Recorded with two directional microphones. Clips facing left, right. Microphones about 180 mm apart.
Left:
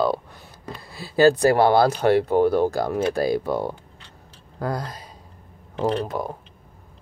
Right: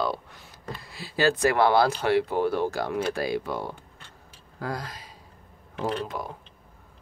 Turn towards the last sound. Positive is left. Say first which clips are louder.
# left 6 dB
turn(degrees=45)  # may be behind; listen again after turning